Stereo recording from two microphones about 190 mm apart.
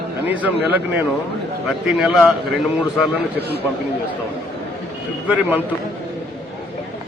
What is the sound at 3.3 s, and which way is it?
Speech, 60° right (ahead or behind).